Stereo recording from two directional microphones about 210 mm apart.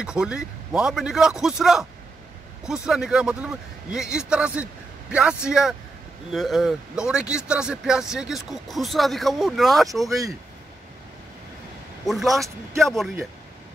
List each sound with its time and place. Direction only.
0.0 s speech: 5° right (ahead or behind)
12.1 s speech: centre (ahead or behind)